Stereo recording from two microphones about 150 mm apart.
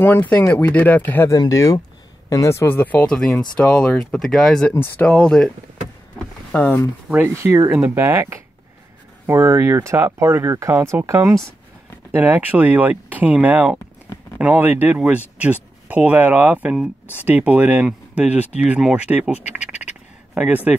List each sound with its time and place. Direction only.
0.0 s speech: 15° left (ahead or behind)
6.5 s speech: 10° left (ahead or behind)
7.1 s speech: 15° right (ahead or behind)